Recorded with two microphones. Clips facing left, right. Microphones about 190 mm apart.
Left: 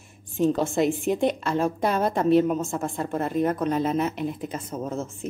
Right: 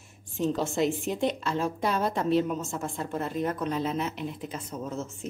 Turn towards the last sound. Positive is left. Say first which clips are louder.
# left 4 dB
turn(degrees=50)  # may be behind; listen again after turning